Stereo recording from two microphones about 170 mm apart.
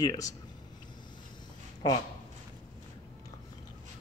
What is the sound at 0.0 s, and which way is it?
Speech, 25° left (ahead or behind).